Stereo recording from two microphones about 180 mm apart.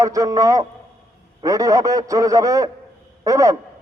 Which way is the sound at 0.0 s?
20° right (ahead or behind).